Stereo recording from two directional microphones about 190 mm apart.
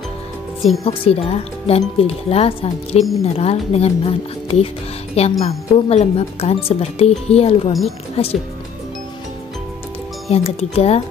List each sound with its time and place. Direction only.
0.8 s speech: 30° left (ahead or behind)
3.0 s speech: centre (ahead or behind)
3.3 s speech: 35° left (ahead or behind)
10.3 s speech: 30° left (ahead or behind)